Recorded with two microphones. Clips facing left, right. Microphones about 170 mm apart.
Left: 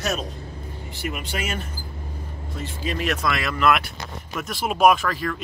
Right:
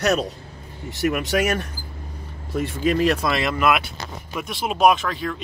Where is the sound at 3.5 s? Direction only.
10° right (ahead or behind).